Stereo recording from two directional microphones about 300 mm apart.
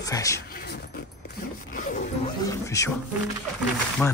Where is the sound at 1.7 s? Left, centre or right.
Left.